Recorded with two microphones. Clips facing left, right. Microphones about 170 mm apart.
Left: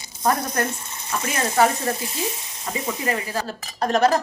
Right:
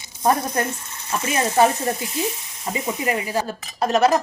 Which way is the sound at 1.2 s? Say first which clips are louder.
Right 2 dB; 20° right (ahead or behind).